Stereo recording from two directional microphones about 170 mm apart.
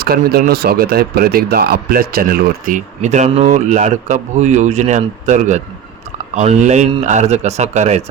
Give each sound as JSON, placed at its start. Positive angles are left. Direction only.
{"t": 0.0, "sound": "a man's voice", "side_deg": -65}